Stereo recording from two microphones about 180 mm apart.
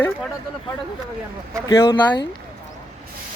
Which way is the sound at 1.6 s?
20° left (ahead or behind).